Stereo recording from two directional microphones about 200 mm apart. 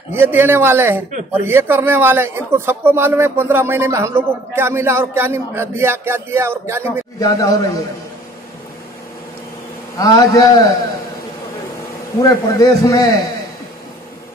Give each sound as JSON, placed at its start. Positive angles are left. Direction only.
{"t": 0.1, "sound": "a man's voice", "side_deg": -10}
{"t": 7.2, "sound": "a man's voice", "side_deg": 20}
{"t": 9.9, "sound": "a man's voice", "side_deg": 20}
{"t": 12.2, "sound": "a man's voice", "side_deg": 15}